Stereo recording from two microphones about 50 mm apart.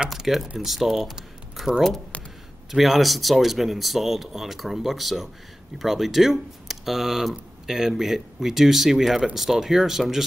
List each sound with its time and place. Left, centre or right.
0.1 s speech: centre
2.7 s speech: centre